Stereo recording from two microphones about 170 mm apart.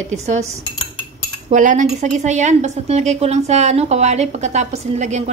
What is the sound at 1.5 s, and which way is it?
A woman's voice, 45° right (ahead or behind).